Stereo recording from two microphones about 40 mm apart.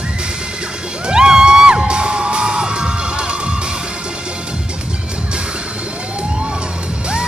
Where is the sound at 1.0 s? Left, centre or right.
Centre.